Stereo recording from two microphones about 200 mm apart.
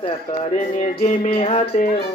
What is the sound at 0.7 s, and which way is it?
Music, 35° left (ahead or behind).